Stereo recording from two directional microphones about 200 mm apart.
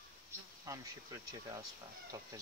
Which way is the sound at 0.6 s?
15° right (ahead or behind).